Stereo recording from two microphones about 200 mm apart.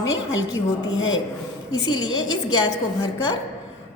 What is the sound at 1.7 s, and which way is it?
Speech, 20° left (ahead or behind).